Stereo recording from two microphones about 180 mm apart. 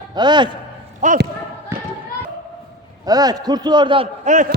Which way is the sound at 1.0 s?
45° right (ahead or behind).